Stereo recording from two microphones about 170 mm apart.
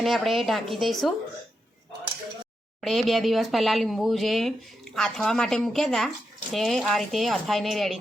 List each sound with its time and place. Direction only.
0.0 s speech: centre (ahead or behind)
2.8 s speech: centre (ahead or behind)